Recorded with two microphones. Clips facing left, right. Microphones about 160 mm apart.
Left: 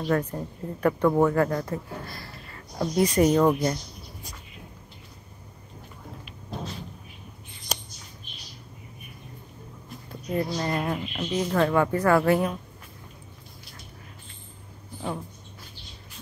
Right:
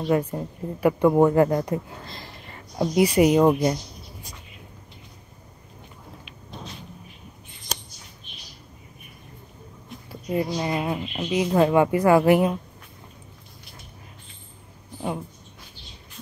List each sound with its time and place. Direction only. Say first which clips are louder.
0.1 s a woman's voice: right 3 dB; 10° right (ahead or behind)
10.0 s a woman's voice: right 2 dB; 10° right (ahead or behind)